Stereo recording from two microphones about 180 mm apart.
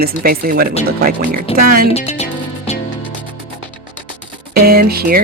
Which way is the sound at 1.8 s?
35° left (ahead or behind).